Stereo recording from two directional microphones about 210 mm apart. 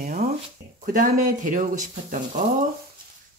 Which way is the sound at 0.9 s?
40° right (ahead or behind).